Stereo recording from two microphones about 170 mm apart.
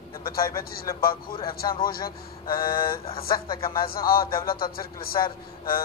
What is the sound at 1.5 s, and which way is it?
Speech, 60° left (ahead or behind).